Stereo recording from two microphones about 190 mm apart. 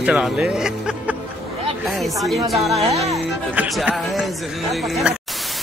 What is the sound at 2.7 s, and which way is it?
Speech, 35° right (ahead or behind).